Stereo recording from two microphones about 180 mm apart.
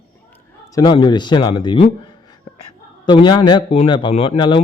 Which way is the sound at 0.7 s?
25° left (ahead or behind).